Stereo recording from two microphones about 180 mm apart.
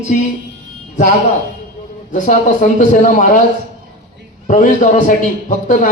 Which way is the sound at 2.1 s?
45° left (ahead or behind).